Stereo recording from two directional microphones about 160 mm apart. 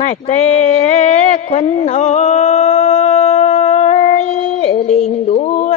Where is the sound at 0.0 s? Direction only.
45° left (ahead or behind).